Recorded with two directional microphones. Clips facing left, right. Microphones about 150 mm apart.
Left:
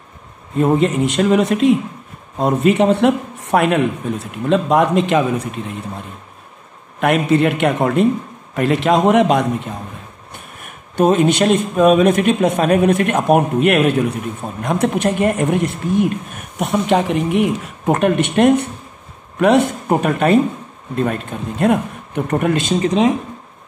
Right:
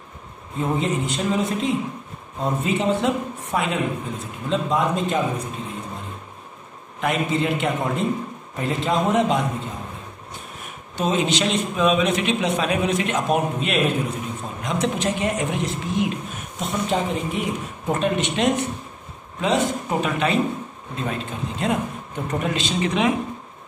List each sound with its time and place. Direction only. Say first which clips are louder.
0.6 s speech: left 8 dB; 70° left (ahead or behind)
7.0 s speech: left 8 dB; 65° left (ahead or behind)
11.0 s speech: left 8 dB; 55° left (ahead or behind)